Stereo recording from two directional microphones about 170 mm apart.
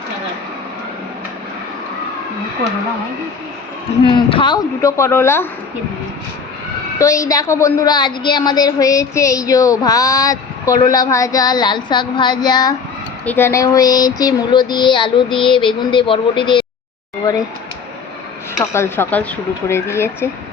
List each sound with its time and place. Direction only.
4.1 s a woman's voice: 30° left (ahead or behind)
7.0 s a woman's voice: 20° left (ahead or behind)
13.2 s a woman's voice: 15° left (ahead or behind); by 16.6 s 30° left (ahead or behind)
18.6 s speech: 15° left (ahead or behind)